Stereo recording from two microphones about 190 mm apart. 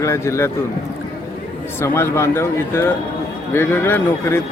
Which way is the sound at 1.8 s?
15° left (ahead or behind).